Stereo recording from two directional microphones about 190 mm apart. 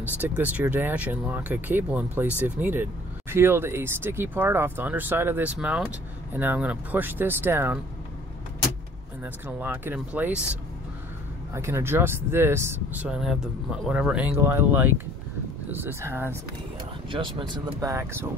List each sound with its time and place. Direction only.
0.2 s speech: 10° right (ahead or behind)
9.2 s speech: 10° right (ahead or behind)
17.1 s speech: 20° right (ahead or behind)